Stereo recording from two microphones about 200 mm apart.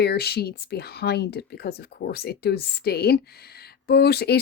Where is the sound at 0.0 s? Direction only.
55° left (ahead or behind).